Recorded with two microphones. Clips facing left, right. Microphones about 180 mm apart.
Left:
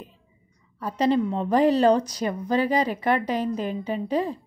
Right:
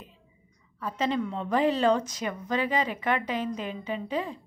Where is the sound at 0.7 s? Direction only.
40° left (ahead or behind).